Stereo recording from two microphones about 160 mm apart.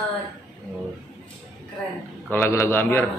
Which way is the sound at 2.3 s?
15° left (ahead or behind).